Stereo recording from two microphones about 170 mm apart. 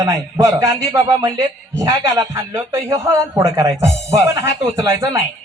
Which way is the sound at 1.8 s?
25° right (ahead or behind).